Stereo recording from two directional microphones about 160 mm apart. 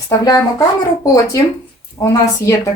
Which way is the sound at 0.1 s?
25° left (ahead or behind).